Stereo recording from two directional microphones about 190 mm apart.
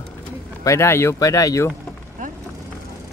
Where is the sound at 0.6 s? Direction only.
15° left (ahead or behind).